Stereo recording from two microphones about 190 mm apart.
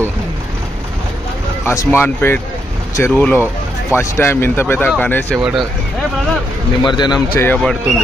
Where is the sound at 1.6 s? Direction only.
15° left (ahead or behind).